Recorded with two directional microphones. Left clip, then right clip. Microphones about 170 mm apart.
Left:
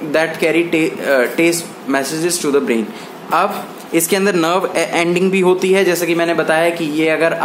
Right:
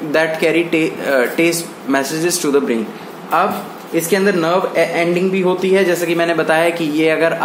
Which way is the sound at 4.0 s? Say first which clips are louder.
Even; 30° left (ahead or behind).